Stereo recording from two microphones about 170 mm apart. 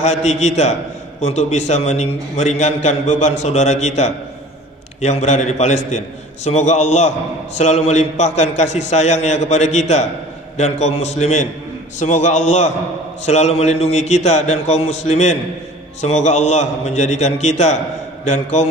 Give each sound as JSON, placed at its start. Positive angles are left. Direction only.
{"t": 0.0, "sound": "a man's voice", "side_deg": 40}